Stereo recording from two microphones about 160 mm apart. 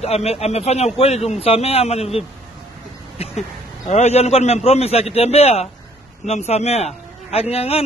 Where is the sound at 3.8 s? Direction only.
45° left (ahead or behind).